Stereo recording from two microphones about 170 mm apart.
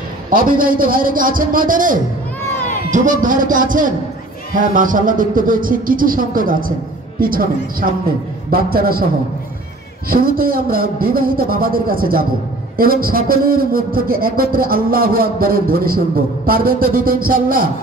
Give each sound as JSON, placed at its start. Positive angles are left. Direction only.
{"t": 0.3, "sound": "a man's voice", "side_deg": -55}
{"t": 10.0, "sound": "a man's voice", "side_deg": -60}